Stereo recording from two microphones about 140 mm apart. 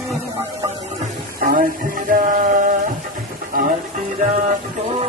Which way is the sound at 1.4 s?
90° right.